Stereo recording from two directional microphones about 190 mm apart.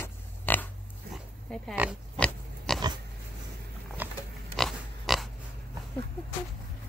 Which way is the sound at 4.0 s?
10° right (ahead or behind).